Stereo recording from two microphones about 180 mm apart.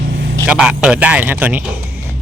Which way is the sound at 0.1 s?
70° right (ahead or behind).